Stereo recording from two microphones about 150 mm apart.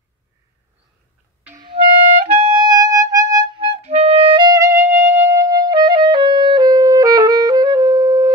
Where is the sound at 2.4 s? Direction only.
30° right (ahead or behind).